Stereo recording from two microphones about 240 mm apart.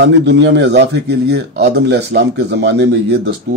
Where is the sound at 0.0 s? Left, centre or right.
Right.